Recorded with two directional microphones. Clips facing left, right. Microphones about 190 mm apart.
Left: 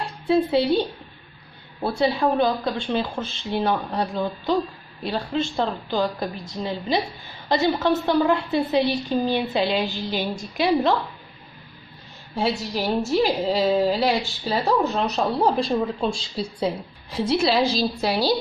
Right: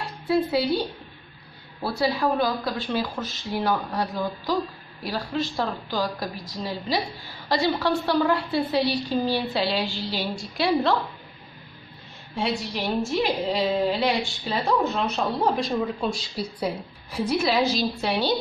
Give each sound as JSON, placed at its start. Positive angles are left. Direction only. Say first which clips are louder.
{"t": 0.3, "sound": "a woman's voice", "louder": "left 3 dB", "side_deg": 25}
{"t": 12.4, "sound": "speech", "louder": "left 3 dB", "side_deg": 35}